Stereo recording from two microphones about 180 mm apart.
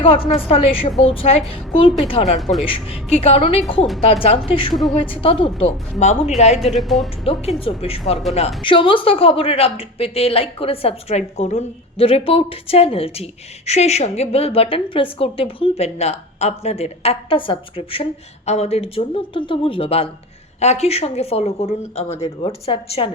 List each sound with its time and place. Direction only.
0.3 s a woman's voice: 35° left (ahead or behind)
4.7 s speech: centre (ahead or behind)
5.2 s a woman's voice: 30° left (ahead or behind)
6.7 s speech: centre (ahead or behind)
7.3 s a woman's voice: 35° left (ahead or behind)